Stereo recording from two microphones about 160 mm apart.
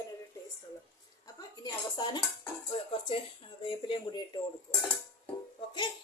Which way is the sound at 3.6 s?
30° left (ahead or behind).